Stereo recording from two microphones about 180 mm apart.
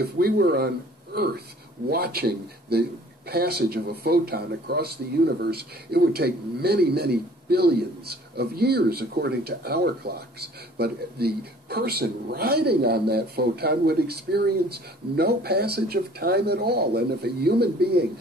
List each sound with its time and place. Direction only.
0.0 s speech: 60° right (ahead or behind)